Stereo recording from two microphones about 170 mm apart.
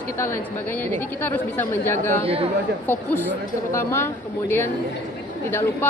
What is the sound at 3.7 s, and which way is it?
A woman's voice, 15° left (ahead or behind).